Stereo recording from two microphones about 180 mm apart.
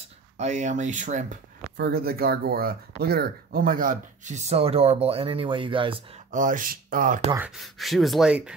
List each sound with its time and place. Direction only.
0.4 s speech: 40° right (ahead or behind)
1.8 s speech: 55° right (ahead or behind); by 6.0 s 30° right (ahead or behind)
6.3 s speech: 45° right (ahead or behind)
7.3 s speech: 5° right (ahead or behind)